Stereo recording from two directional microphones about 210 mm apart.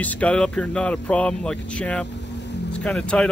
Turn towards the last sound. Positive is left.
turn(degrees=5)  # may be behind; listen again after turning